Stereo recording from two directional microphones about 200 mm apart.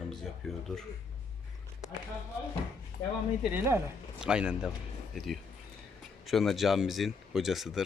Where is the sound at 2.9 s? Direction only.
45° left (ahead or behind).